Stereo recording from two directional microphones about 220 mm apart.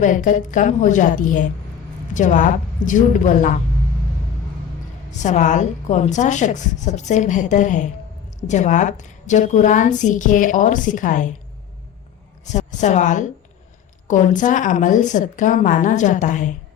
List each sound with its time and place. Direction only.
0.0 s a woman's voice: 35° left (ahead or behind)
5.2 s a woman's voice: 35° left (ahead or behind)
12.5 s a woman's voice: 35° left (ahead or behind)